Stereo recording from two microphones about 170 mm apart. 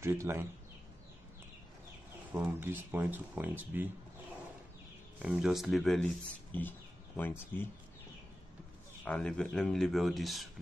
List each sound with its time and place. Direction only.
0.0 s speech: 15° right (ahead or behind)
2.3 s speech: 10° right (ahead or behind)
5.2 s speech: 5° right (ahead or behind)
9.0 s speech: 5° left (ahead or behind)